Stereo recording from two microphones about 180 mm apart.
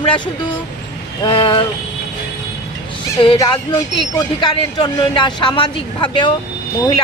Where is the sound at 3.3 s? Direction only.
20° left (ahead or behind).